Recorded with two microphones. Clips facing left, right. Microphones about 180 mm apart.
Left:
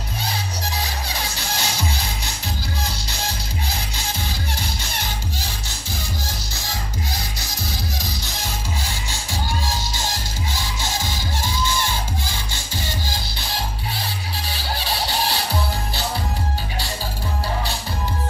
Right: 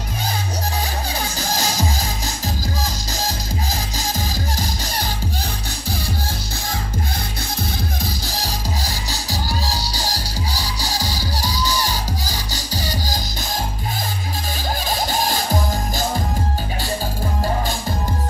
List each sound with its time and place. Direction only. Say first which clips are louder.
1.1 s music: right 4 dB; 35° right (ahead or behind)
8.3 s music: right 3 dB; 35° right (ahead or behind)